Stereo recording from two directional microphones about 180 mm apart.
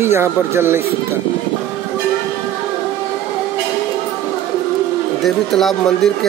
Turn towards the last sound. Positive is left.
turn(degrees=0)  # may be behind; listen again after turning